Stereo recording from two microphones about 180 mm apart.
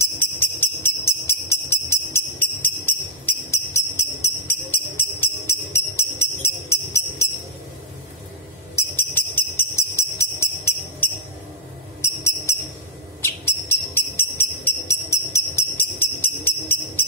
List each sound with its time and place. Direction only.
0.0 s jingle bell: 10° left (ahead or behind)
5.9 s music: 15° left (ahead or behind)
8.7 s music: 10° left (ahead or behind)
12.0 s a sound: 15° left (ahead or behind)